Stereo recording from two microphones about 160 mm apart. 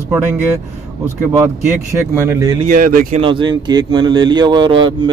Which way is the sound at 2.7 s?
60° right (ahead or behind).